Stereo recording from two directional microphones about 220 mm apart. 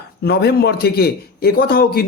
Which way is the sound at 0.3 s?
45° left (ahead or behind).